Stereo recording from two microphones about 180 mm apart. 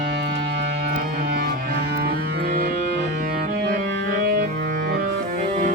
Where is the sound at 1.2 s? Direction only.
55° right (ahead or behind).